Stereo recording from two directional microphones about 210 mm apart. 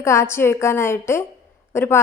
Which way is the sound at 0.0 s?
15° left (ahead or behind).